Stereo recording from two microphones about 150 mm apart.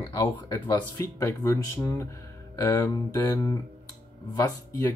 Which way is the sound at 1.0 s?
20° left (ahead or behind).